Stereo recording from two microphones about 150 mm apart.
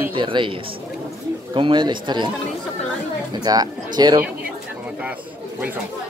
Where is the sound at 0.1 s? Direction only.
35° right (ahead or behind).